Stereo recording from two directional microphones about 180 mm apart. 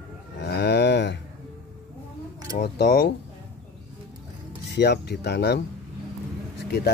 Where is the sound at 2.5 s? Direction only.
60° left (ahead or behind).